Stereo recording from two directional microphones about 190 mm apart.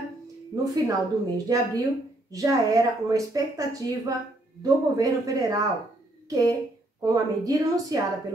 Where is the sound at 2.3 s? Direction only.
15° right (ahead or behind).